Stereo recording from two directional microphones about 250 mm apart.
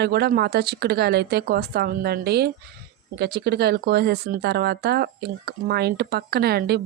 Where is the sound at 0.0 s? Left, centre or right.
Right.